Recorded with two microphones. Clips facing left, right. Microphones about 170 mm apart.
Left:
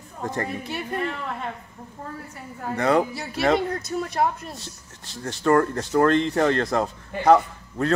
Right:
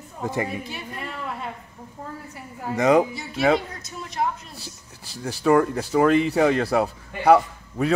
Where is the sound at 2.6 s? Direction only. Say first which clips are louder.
Right 3 dB; 10° right (ahead or behind).